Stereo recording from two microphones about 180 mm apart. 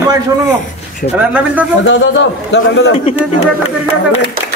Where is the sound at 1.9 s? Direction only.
85° left.